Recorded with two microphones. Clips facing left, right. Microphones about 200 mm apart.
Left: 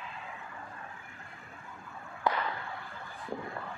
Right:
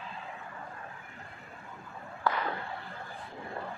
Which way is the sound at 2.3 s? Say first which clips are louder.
Even; 15° left (ahead or behind).